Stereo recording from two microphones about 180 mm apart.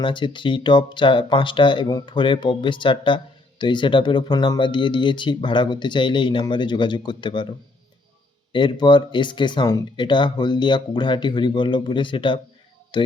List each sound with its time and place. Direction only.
0.0 s speech: 25° left (ahead or behind)
8.5 s speech: 25° left (ahead or behind)